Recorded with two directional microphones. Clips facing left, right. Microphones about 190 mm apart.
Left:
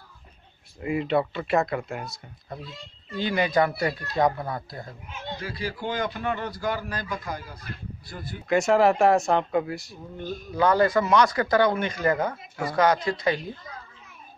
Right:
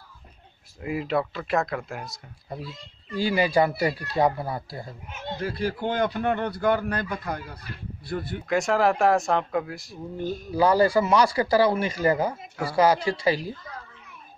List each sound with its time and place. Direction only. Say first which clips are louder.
0.7 s speech: left 2 dB; centre (ahead or behind)
3.2 s speech: right 1 dB; 10° right (ahead or behind)
5.4 s speech: right 6 dB; 55° right (ahead or behind)
8.5 s speech: left 3 dB; centre (ahead or behind)
11.2 s speech: right 1 dB; 30° right (ahead or behind)
11.6 s speech: right 1 dB; 5° right (ahead or behind)
13.0 s speech: right 1 dB; 30° right (ahead or behind)